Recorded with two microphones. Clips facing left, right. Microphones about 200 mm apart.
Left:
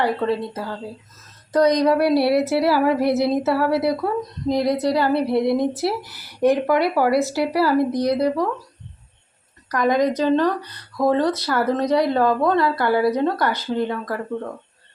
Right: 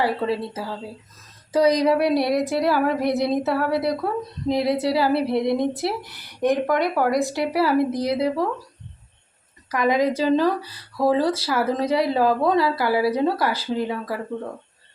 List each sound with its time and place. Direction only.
0.0 s speech: 5° right (ahead or behind)
9.6 s a woman's voice: 5° right (ahead or behind)